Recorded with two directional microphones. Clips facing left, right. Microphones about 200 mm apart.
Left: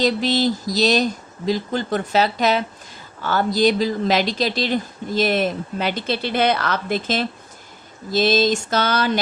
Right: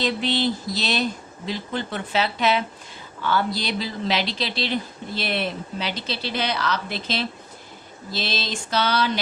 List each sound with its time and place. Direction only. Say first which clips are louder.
0.0 s speech: left 4 dB; 40° left (ahead or behind)